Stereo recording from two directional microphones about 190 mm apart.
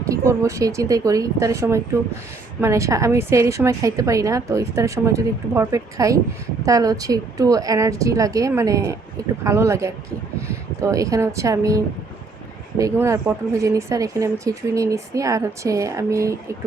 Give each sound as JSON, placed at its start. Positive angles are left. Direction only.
{"t": 0.1, "sound": "a woman's voice", "side_deg": -15}
{"t": 12.8, "sound": "a woman's voice", "side_deg": -15}